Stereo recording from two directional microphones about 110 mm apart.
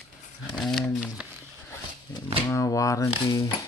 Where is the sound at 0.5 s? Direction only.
Centre (ahead or behind).